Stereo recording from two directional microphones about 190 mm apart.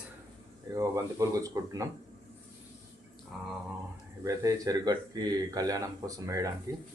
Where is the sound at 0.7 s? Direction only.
15° right (ahead or behind).